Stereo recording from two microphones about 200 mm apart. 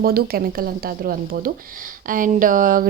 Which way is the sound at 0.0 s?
50° right (ahead or behind).